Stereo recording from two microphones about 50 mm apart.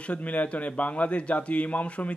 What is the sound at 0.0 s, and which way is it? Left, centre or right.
Speech, left.